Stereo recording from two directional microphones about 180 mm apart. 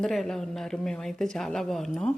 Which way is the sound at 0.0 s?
Centre (ahead or behind).